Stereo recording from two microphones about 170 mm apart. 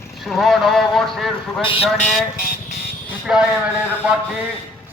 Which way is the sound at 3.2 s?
5° right (ahead or behind).